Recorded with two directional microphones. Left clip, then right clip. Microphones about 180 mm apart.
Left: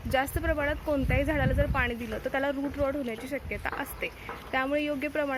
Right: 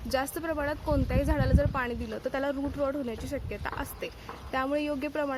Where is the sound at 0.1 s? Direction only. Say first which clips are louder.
Left 2 dB; 15° right (ahead or behind).